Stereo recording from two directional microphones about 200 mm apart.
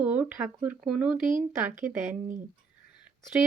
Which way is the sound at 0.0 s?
10° right (ahead or behind).